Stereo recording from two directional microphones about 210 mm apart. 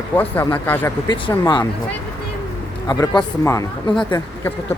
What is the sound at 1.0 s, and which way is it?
Speech, 25° left (ahead or behind).